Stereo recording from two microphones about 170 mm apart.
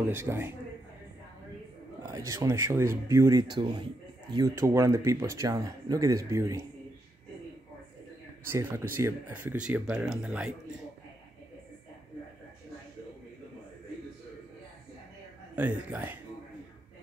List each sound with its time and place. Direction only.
0.1 s speech: 15° right (ahead or behind)
2.0 s speech: 15° right (ahead or behind)
8.5 s speech: 15° right (ahead or behind)
15.5 s speech: 10° right (ahead or behind)